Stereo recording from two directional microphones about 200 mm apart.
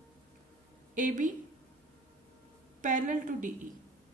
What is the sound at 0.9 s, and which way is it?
Speech, 40° right (ahead or behind).